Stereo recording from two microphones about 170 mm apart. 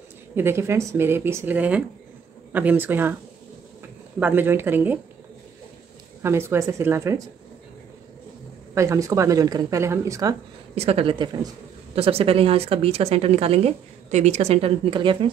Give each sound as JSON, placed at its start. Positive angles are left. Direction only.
{"t": 0.4, "sound": "a woman's voice", "side_deg": -15}
{"t": 4.2, "sound": "a woman's voice", "side_deg": -10}
{"t": 6.2, "sound": "a woman's voice", "side_deg": -15}
{"t": 8.7, "sound": "a woman's voice", "side_deg": -15}
{"t": 10.7, "sound": "speech", "side_deg": -35}